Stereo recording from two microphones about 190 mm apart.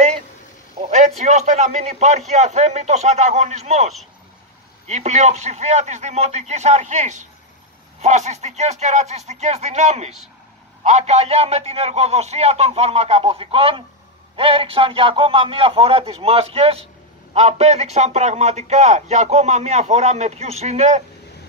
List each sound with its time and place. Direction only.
0.8 s a man's voice: 35° right (ahead or behind)